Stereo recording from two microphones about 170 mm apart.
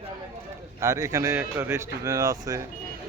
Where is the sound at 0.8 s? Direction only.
15° right (ahead or behind).